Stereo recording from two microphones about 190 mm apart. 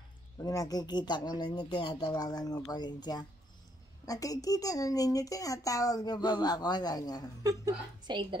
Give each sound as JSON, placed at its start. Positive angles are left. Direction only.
{"t": 0.4, "sound": "speech", "side_deg": 20}
{"t": 7.4, "sound": "a woman's voice", "side_deg": -20}